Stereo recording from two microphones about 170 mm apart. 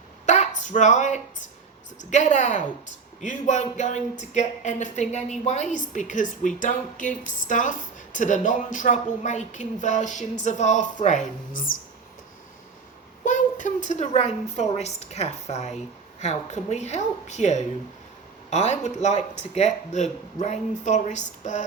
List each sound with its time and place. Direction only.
0.3 s speech: 45° left (ahead or behind)
13.2 s a woman's voice: 50° left (ahead or behind)